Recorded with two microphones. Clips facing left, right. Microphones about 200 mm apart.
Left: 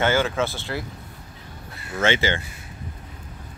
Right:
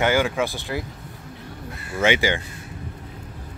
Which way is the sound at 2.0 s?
15° right (ahead or behind).